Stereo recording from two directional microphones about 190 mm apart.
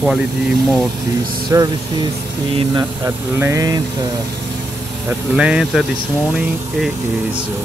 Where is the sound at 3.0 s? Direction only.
15° right (ahead or behind).